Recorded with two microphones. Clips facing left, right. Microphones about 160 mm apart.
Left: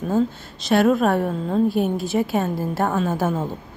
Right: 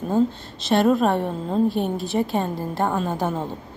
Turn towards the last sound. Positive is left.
turn(degrees=5)  # may be behind; listen again after turning